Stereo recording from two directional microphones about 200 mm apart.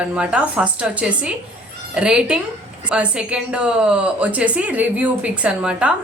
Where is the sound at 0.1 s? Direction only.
5° right (ahead or behind).